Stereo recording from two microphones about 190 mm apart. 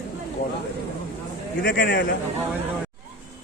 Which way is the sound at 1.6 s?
60° left (ahead or behind).